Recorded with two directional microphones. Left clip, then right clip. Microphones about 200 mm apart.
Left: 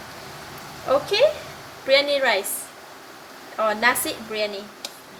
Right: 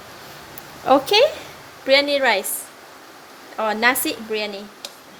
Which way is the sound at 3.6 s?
50° right (ahead or behind).